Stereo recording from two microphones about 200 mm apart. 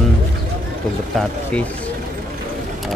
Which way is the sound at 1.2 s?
5° left (ahead or behind).